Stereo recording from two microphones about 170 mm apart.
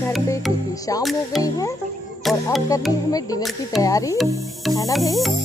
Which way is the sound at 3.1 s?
20° left (ahead or behind).